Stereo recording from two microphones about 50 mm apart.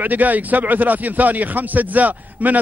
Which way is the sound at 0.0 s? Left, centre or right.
Right.